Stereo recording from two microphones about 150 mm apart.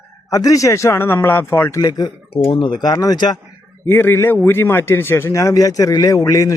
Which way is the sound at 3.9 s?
15° left (ahead or behind).